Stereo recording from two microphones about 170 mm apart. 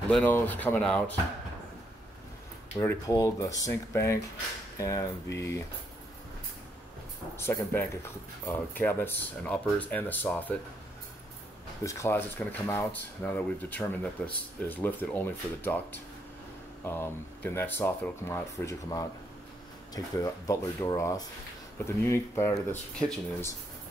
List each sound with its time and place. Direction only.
0.1 s speech: 10° left (ahead or behind)
2.8 s speech: 20° left (ahead or behind)
7.3 s speech: 15° left (ahead or behind)
11.8 s speech: 15° left (ahead or behind)